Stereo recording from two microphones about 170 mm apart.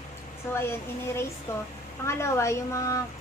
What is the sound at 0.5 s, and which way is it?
Speech, 15° left (ahead or behind).